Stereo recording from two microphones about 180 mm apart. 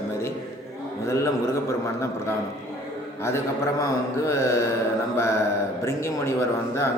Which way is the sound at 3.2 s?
15° left (ahead or behind).